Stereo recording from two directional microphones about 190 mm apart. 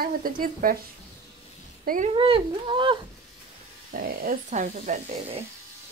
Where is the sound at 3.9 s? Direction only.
50° right (ahead or behind); by 5.4 s 35° right (ahead or behind).